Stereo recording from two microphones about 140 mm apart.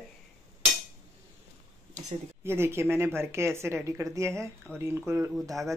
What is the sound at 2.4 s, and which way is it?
A woman's voice, 15° right (ahead or behind).